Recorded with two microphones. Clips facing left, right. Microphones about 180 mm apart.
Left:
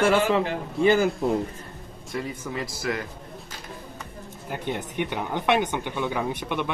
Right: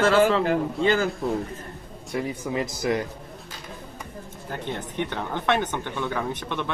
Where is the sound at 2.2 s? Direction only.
20° right (ahead or behind).